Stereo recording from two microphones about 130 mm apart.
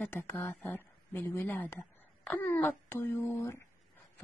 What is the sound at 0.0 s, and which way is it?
Speech, 15° left (ahead or behind).